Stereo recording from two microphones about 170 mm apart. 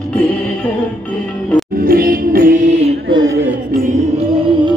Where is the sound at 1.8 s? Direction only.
60° right (ahead or behind).